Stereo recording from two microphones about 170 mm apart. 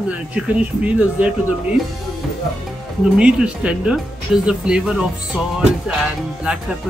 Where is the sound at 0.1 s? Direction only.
5° right (ahead or behind).